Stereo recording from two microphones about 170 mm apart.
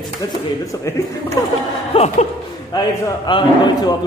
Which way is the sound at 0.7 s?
20° left (ahead or behind).